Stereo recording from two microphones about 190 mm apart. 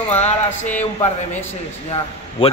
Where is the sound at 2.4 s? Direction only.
30° left (ahead or behind).